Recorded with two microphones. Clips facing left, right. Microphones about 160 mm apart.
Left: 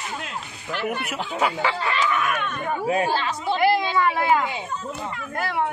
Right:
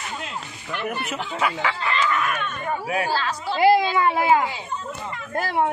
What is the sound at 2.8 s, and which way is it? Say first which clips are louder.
Speech: left 3 dB; 25° left (ahead or behind).